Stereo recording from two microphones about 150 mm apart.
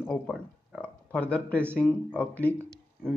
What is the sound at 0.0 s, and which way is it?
Speech, centre (ahead or behind).